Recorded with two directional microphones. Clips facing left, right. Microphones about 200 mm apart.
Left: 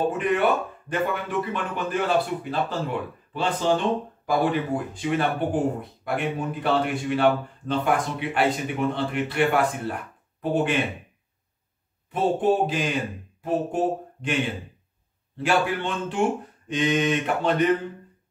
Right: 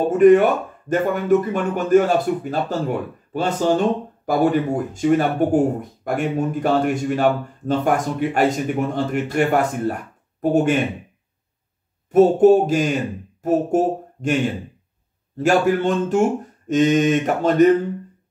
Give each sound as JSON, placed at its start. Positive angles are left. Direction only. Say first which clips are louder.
{"t": 0.1, "sound": "speech", "louder": "right 10 dB", "side_deg": -45}
{"t": 12.1, "sound": "speech", "louder": "right 10 dB", "side_deg": -45}